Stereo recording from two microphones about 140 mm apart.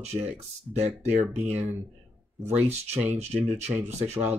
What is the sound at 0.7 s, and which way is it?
Speech, 50° right (ahead or behind).